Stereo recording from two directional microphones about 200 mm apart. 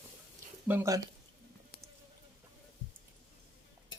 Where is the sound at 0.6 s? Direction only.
10° right (ahead or behind).